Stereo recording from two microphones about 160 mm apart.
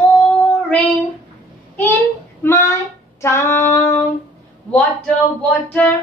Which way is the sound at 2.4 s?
15° left (ahead or behind).